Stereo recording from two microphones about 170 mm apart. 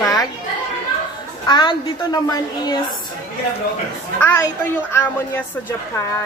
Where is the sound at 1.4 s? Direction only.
25° left (ahead or behind).